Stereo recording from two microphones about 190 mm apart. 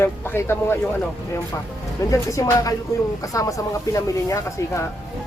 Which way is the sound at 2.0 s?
15° left (ahead or behind).